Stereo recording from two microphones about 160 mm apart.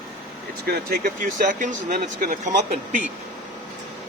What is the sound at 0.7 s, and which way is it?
Speech, 65° right (ahead or behind).